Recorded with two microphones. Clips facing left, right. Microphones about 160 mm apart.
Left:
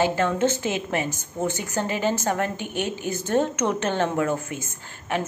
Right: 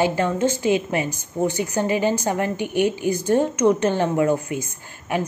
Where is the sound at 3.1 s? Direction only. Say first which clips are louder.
Right 5 dB; 50° left (ahead or behind).